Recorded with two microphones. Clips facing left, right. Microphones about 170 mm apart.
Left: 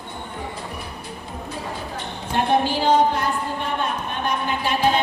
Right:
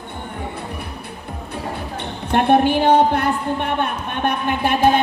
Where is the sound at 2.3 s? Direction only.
60° right (ahead or behind).